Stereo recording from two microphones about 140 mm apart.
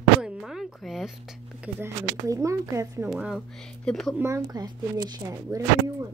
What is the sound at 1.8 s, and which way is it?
Speech, 20° right (ahead or behind).